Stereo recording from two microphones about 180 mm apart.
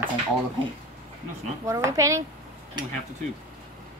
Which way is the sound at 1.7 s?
15° right (ahead or behind).